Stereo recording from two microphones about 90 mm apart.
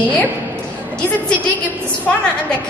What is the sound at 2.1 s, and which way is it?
Speech, 10° left (ahead or behind).